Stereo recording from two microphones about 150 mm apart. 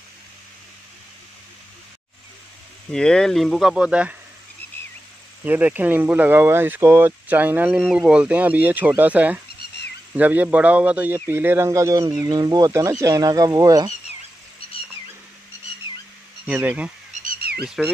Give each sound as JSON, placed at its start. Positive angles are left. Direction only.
{"t": 2.9, "sound": "speech", "side_deg": 5}
{"t": 5.4, "sound": "speech", "side_deg": -10}
{"t": 16.4, "sound": "speech", "side_deg": -10}
{"t": 17.2, "sound": "a sound", "side_deg": -80}
{"t": 17.6, "sound": "speech", "side_deg": -5}